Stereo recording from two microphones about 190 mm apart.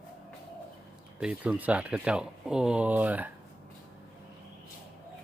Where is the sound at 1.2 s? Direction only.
5° right (ahead or behind).